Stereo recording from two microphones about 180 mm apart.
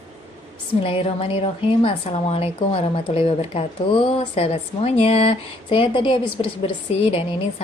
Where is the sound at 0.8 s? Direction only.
30° left (ahead or behind).